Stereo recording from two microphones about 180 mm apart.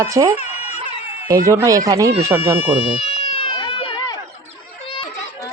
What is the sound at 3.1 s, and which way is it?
Run, 30° left (ahead or behind).